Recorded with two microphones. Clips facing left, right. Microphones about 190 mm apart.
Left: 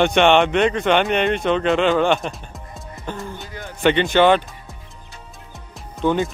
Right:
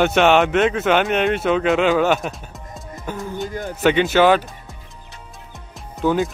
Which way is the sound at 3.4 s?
45° right (ahead or behind).